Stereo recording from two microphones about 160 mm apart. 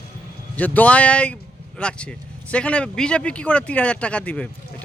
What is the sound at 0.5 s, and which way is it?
A man's voice, 10° left (ahead or behind).